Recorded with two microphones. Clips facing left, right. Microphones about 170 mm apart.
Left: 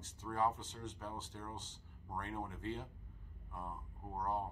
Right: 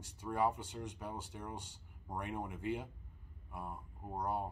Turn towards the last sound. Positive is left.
turn(degrees=-10)  # may be behind; listen again after turning